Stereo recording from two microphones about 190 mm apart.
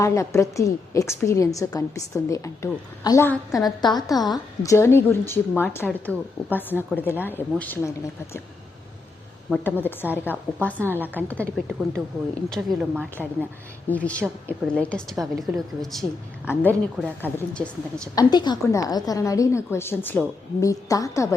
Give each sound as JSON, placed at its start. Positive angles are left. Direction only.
{"t": 0.0, "sound": "a woman's voice", "side_deg": 15}
{"t": 9.5, "sound": "a woman's voice", "side_deg": 10}
{"t": 12.5, "sound": "a woman's voice", "side_deg": -5}
{"t": 18.1, "sound": "a woman's voice", "side_deg": 20}